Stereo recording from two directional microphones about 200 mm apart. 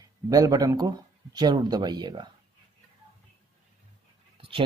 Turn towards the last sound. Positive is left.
turn(degrees=-25)  # may be behind; listen again after turning